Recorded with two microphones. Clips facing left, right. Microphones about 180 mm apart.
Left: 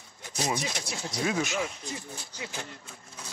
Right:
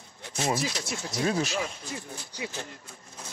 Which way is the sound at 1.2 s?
35° right (ahead or behind).